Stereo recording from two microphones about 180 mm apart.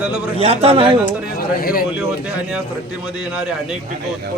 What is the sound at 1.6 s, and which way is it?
Speech, 55° left (ahead or behind).